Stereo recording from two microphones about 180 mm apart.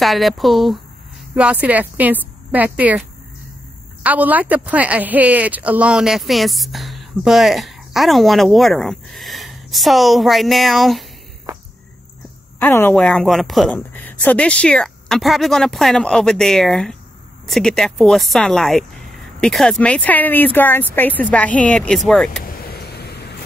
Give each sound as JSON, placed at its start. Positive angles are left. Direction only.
{"t": 0.0, "sound": "a woman's voice", "side_deg": 0}
{"t": 12.5, "sound": "speech", "side_deg": 10}
{"t": 22.4, "sound": "vehicle", "side_deg": 55}